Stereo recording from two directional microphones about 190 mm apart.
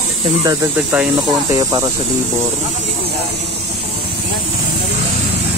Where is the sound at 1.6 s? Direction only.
20° right (ahead or behind).